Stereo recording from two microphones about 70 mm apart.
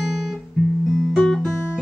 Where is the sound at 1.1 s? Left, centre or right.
Centre.